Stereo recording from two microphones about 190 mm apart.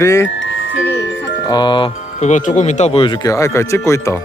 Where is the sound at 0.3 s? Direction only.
80° left.